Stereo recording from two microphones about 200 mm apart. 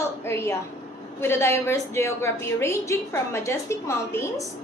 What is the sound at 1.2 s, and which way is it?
A woman's voice, 10° left (ahead or behind).